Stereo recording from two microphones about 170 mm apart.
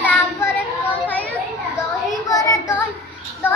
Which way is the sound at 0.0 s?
10° left (ahead or behind).